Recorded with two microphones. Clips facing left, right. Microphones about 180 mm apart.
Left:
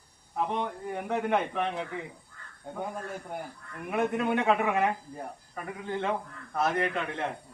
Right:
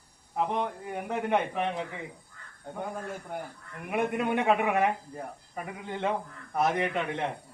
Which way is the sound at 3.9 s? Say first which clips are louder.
Even; 10° right (ahead or behind).